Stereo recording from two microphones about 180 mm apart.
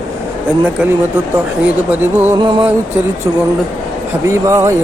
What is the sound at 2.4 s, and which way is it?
Speech, 25° right (ahead or behind).